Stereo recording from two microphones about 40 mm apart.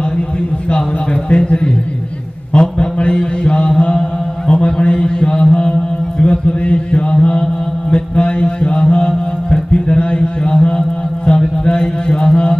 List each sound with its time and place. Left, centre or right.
1.3 s a man's voice: left
2.5 s mantra: left
4.5 s a sound: left
4.8 s mantra: left
11.2 s music: left